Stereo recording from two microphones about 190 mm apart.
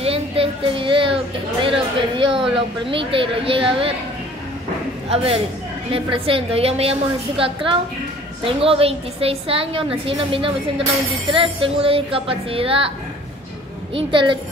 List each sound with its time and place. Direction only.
0.0 s a child's voice: 30° right (ahead or behind)
5.1 s a woman's voice: 30° right (ahead or behind)
13.9 s a woman's voice: 25° right (ahead or behind)